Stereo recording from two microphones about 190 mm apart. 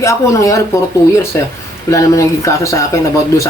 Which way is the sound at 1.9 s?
15° left (ahead or behind).